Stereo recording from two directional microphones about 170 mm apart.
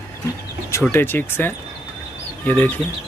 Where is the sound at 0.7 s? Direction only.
15° left (ahead or behind).